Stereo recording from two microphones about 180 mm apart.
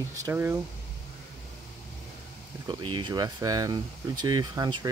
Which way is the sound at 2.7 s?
25° right (ahead or behind).